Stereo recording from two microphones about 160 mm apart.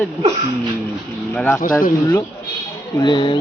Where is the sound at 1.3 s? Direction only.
10° left (ahead or behind).